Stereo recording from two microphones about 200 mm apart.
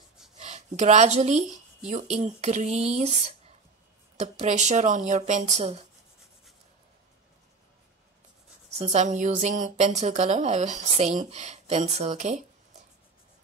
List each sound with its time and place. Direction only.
0.4 s speech: 35° right (ahead or behind)
8.7 s speech: 35° right (ahead or behind)